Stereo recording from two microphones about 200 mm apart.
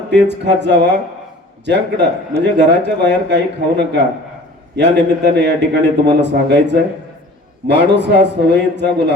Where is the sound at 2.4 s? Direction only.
60° right (ahead or behind).